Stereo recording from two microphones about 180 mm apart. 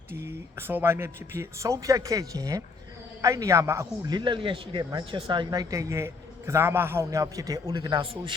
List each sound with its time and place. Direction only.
0.3 s a man's voice: 10° right (ahead or behind); by 8.4 s 30° right (ahead or behind)